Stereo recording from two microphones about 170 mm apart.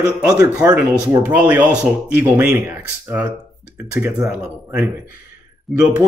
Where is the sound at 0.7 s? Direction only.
10° right (ahead or behind).